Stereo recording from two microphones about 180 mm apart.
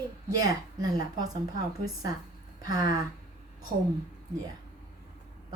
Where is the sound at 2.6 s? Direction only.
20° right (ahead or behind).